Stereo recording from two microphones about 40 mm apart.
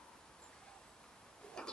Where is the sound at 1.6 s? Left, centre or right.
Centre.